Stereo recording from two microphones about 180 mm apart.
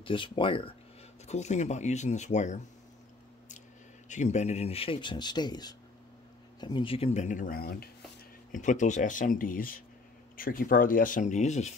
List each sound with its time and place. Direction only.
0.0 s speech: 30° left (ahead or behind)
1.2 s speech: 40° left (ahead or behind)
4.1 s speech: 40° left (ahead or behind); by 7.9 s 55° left (ahead or behind)
8.5 s speech: 45° left (ahead or behind)